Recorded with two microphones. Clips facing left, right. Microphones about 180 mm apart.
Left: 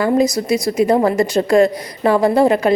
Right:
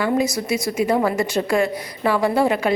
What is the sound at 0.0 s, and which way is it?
A woman's voice, 35° left (ahead or behind).